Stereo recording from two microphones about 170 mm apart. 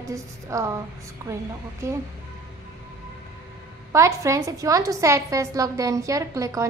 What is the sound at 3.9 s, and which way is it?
A woman's voice, 15° right (ahead or behind).